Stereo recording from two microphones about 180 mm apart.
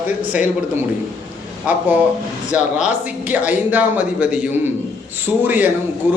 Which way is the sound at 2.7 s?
5° right (ahead or behind).